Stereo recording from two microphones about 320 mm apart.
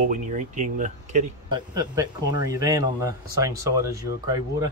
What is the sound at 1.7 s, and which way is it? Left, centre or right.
Speech, centre.